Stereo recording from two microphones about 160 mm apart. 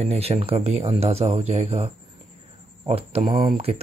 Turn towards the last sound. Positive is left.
turn(degrees=-35)  # may be behind; listen again after turning